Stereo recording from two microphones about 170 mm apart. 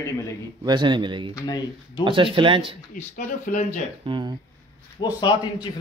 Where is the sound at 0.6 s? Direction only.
25° right (ahead or behind).